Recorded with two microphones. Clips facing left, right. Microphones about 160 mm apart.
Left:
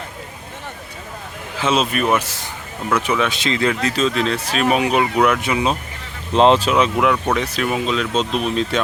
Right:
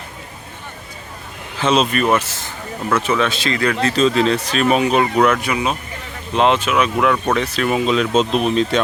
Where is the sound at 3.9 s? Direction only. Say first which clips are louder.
Right 4 dB; centre (ahead or behind).